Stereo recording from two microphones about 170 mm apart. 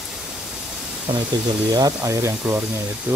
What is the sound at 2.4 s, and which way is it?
Speech, 5° right (ahead or behind).